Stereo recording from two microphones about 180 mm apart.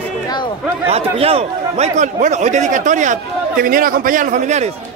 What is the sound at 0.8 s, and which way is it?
A man's voice, 35° right (ahead or behind).